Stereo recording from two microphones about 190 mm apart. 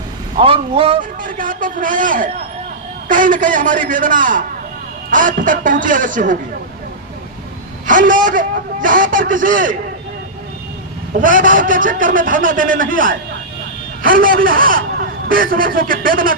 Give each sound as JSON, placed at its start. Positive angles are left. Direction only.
{"t": 0.3, "sound": "speech", "side_deg": -30}
{"t": 1.2, "sound": "a man's voice", "side_deg": -45}
{"t": 7.9, "sound": "a man's voice", "side_deg": -45}
{"t": 11.2, "sound": "a man's voice", "side_deg": -45}